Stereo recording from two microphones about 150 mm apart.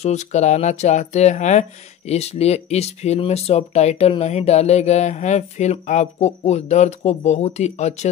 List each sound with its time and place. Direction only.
0.0 s speech: 50° left (ahead or behind)